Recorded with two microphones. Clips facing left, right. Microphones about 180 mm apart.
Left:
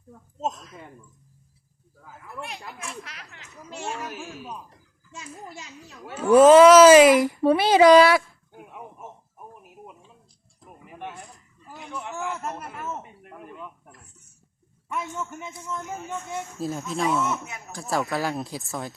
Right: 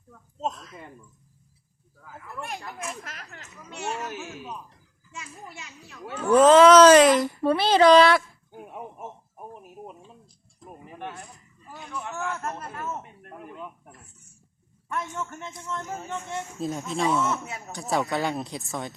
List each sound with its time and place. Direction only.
0.3 s a man's voice: 5° left (ahead or behind)
3.0 s speech: 45° right (ahead or behind)
6.1 s speech: 10° left (ahead or behind)
10.9 s speech: 15° left (ahead or behind)
13.3 s speech: 10° right (ahead or behind)
15.3 s a man's voice: 10° left (ahead or behind)